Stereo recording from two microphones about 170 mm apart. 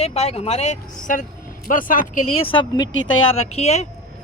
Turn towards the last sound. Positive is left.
turn(degrees=40)  # may be behind; listen again after turning